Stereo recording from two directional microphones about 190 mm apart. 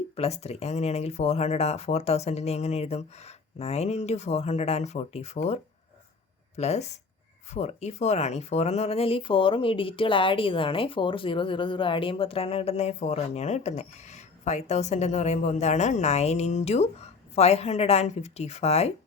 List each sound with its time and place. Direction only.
0.2 s speech: 35° left (ahead or behind)
6.6 s speech: 35° left (ahead or behind)